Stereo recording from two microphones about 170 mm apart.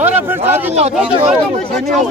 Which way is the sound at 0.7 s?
40° right (ahead or behind).